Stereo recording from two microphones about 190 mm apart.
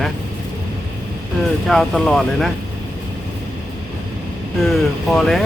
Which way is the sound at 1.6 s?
Centre (ahead or behind).